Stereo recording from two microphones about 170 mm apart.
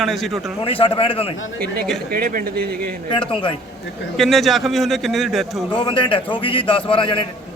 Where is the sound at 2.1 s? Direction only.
55° right (ahead or behind).